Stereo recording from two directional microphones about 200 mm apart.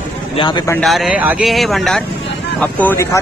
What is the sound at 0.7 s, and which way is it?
Speech, centre (ahead or behind).